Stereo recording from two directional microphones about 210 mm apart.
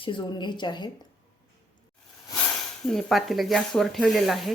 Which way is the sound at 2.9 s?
Centre (ahead or behind).